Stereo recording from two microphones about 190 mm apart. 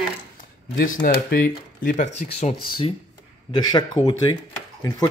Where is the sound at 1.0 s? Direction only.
50° left (ahead or behind).